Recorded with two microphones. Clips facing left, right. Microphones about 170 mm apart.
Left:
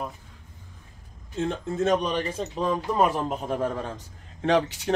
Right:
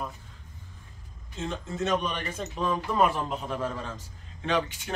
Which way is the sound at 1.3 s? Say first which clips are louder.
Left 6 dB; 55° left (ahead or behind).